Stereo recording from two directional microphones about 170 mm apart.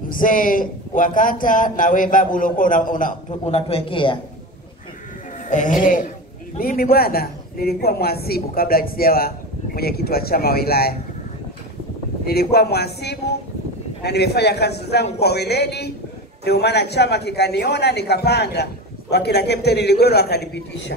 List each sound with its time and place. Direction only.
0.1 s speech: 55° left (ahead or behind); by 4.2 s 30° left (ahead or behind)
5.5 s a woman's voice: 50° left (ahead or behind); by 11.0 s 65° left (ahead or behind)
12.3 s a man's voice: 70° left (ahead or behind); by 20.9 s 90° left